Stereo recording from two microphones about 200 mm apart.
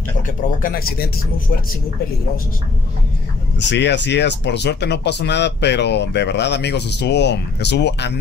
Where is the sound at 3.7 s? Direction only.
60° left (ahead or behind).